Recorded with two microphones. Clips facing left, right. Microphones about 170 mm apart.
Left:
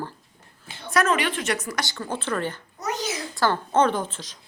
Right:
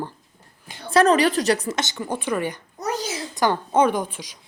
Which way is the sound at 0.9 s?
35° right (ahead or behind).